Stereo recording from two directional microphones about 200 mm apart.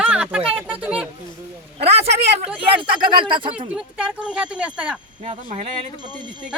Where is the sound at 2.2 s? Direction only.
30° right (ahead or behind).